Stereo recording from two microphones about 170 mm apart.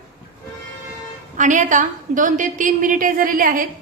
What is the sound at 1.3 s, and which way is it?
A woman's voice, 45° right (ahead or behind).